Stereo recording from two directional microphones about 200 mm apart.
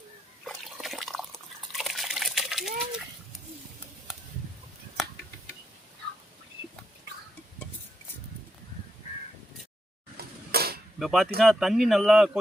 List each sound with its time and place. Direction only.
0.4 s liquid: centre (ahead or behind)
10.2 s a sound: 50° right (ahead or behind)
11.0 s speech: centre (ahead or behind)